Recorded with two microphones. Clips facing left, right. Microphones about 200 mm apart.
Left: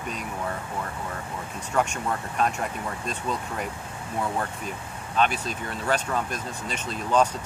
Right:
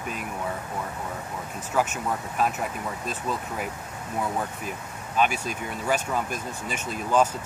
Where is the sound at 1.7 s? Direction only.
5° right (ahead or behind).